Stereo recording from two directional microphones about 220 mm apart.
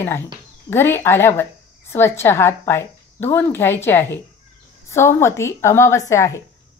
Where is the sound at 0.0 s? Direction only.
10° left (ahead or behind).